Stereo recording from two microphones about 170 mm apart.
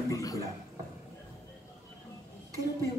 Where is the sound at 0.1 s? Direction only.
20° left (ahead or behind).